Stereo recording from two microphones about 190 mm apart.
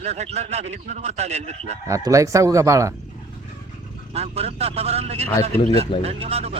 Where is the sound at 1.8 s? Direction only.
15° right (ahead or behind).